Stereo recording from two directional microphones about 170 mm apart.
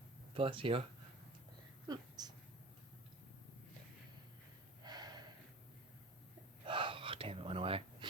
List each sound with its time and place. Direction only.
0.3 s speech: 30° right (ahead or behind)
1.9 s a sound: 25° right (ahead or behind)
4.8 s snort: 25° right (ahead or behind)
6.7 s gasp: 30° right (ahead or behind)